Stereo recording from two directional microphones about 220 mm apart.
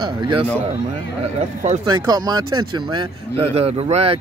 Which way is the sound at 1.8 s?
20° right (ahead or behind).